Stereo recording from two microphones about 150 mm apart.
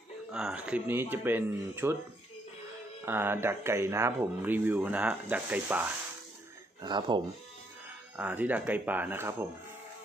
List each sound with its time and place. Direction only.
0.3 s speech: 5° right (ahead or behind)
3.1 s speech: 15° right (ahead or behind)
6.8 s speech: 30° right (ahead or behind)
8.2 s speech: 10° right (ahead or behind)